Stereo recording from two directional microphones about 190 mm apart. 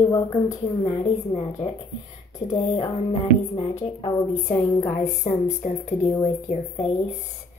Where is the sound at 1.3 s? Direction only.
35° left (ahead or behind).